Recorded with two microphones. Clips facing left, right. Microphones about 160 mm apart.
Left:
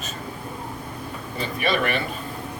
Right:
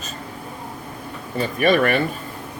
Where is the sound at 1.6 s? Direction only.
50° right (ahead or behind).